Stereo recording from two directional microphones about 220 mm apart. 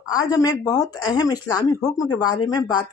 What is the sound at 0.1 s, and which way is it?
Speech, 15° left (ahead or behind).